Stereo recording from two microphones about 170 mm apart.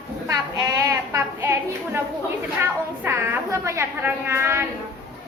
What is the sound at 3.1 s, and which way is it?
A woman's voice, 15° right (ahead or behind).